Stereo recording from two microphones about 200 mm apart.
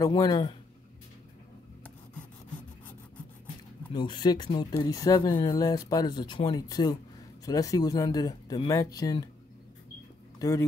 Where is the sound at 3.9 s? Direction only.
20° left (ahead or behind).